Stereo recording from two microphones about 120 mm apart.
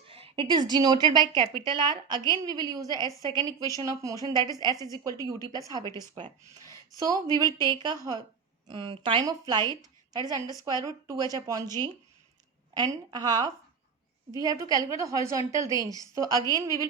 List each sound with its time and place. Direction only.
0.1 s a woman's voice: 50° right (ahead or behind); by 11.7 s 30° right (ahead or behind)
12.7 s a woman's voice: 35° right (ahead or behind)